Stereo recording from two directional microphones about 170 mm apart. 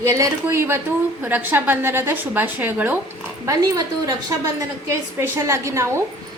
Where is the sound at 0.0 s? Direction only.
15° right (ahead or behind).